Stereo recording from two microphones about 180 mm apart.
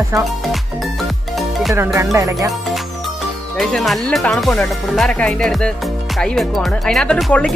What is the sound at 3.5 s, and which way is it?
Speech, centre (ahead or behind).